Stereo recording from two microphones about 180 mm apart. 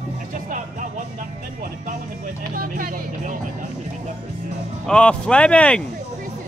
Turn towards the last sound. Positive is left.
turn(degrees=5)  # may be behind; listen again after turning